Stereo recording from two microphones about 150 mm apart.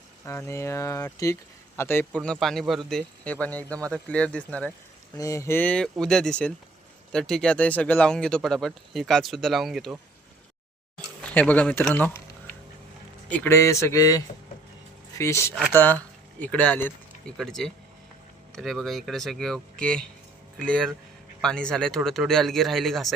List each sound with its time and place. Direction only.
0.3 s speech: 15° left (ahead or behind)
2.2 s speech: 5° left (ahead or behind)
5.1 s speech: 20° left (ahead or behind); by 9.9 s centre (ahead or behind)
11.2 s speech: 10° left (ahead or behind)
13.3 s speech: 15° left (ahead or behind)